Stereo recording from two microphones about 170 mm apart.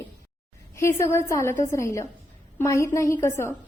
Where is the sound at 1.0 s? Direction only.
15° left (ahead or behind).